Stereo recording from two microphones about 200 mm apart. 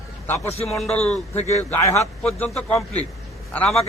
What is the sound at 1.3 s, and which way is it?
Speech, 35° left (ahead or behind).